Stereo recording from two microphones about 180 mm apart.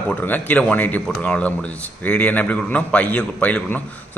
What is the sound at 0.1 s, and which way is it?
A man's voice, 10° left (ahead or behind).